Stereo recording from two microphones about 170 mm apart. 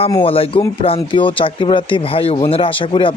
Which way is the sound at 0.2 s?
35° left (ahead or behind).